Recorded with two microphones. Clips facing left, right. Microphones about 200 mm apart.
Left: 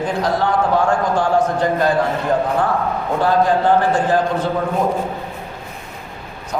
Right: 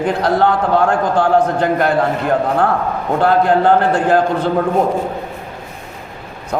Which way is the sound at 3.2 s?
60° right (ahead or behind).